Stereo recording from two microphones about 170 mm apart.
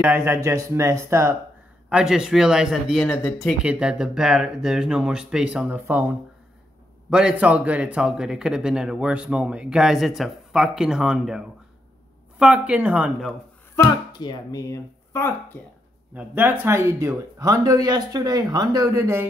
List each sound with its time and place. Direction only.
0.0 s speech: 10° right (ahead or behind)
1.9 s speech: 5° right (ahead or behind)
3.4 s speech: 5° right (ahead or behind)
7.1 s speech: 5° right (ahead or behind)
14.1 s speech: 25° left (ahead or behind)
16.2 s speech: 10° right (ahead or behind)